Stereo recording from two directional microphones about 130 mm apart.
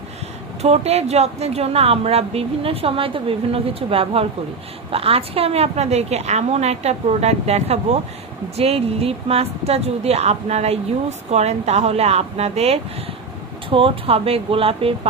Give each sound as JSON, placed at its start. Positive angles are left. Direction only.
{"t": 0.6, "sound": "a woman's voice", "side_deg": -55}